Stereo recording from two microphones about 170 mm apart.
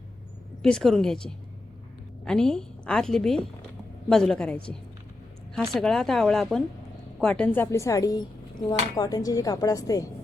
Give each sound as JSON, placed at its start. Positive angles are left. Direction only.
{"t": 0.6, "sound": "a woman's voice", "side_deg": 0}